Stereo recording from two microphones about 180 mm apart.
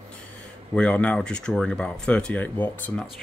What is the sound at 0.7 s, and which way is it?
Speech, 5° left (ahead or behind).